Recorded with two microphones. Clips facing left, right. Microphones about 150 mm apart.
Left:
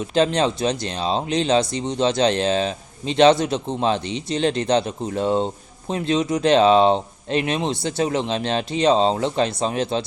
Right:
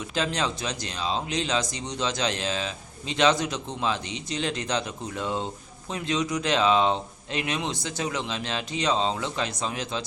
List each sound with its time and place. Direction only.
0.1 s speech: 30° left (ahead or behind)